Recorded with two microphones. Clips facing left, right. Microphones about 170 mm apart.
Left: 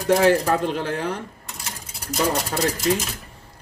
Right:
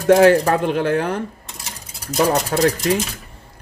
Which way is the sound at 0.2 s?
60° right (ahead or behind).